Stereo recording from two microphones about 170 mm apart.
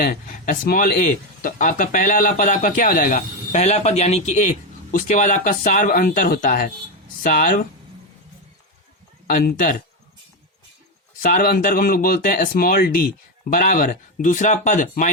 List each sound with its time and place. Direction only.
0.0 s speech: 50° left (ahead or behind)
1.4 s speech: 50° left (ahead or behind)
9.3 s speech: 60° left (ahead or behind)
11.2 s speech: 50° left (ahead or behind)